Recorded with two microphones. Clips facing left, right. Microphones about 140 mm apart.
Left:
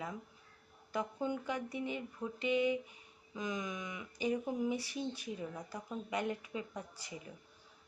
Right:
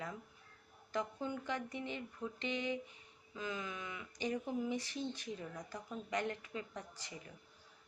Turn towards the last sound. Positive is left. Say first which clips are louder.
# left 3 dB
turn(degrees=10)  # may be behind; listen again after turning